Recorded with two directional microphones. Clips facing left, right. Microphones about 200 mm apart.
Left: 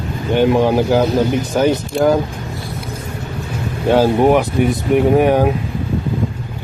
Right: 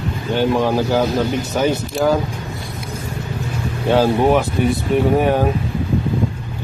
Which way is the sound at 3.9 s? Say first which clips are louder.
Left 2 dB; 15° left (ahead or behind).